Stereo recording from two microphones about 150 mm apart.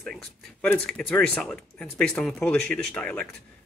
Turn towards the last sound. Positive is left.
turn(degrees=10)  # may be behind; listen again after turning